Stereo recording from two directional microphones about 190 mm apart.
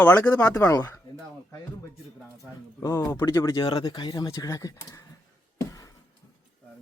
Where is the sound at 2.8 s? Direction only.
15° left (ahead or behind).